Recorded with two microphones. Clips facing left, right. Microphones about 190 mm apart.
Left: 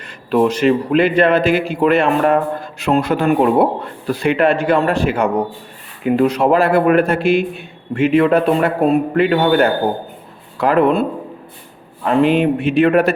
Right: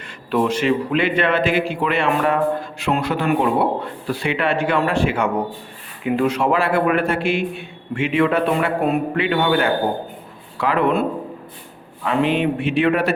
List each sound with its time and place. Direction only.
0.3 s a man's voice: 40° left (ahead or behind)
12.4 s speech: 40° left (ahead or behind)